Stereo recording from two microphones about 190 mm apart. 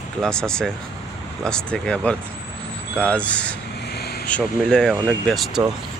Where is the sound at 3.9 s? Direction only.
55° left (ahead or behind).